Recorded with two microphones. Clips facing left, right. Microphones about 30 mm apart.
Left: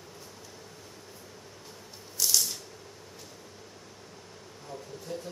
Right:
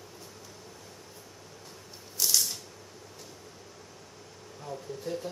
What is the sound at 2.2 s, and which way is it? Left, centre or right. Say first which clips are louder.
Rattle: even; centre.